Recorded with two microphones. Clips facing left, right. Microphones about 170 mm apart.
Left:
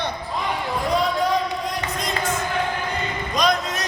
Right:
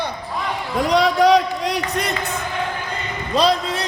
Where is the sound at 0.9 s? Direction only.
80° right.